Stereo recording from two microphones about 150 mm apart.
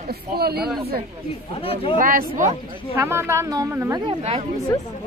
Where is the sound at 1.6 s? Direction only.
40° left (ahead or behind).